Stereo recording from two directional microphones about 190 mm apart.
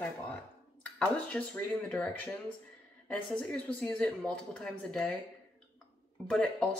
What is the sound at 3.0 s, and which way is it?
A woman's voice, 5° left (ahead or behind).